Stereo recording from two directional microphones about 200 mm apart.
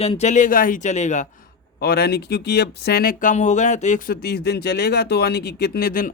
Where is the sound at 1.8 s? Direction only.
55° left (ahead or behind).